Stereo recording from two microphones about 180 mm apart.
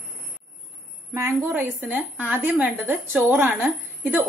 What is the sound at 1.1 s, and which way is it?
A woman's voice, 15° right (ahead or behind).